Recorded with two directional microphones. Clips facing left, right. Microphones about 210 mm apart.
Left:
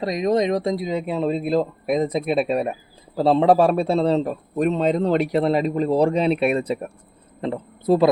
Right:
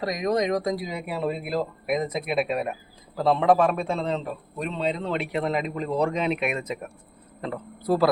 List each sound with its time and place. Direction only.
0.0 s a man's voice: 25° left (ahead or behind)